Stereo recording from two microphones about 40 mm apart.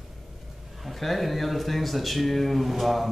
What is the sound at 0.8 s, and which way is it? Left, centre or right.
A man's voice, centre.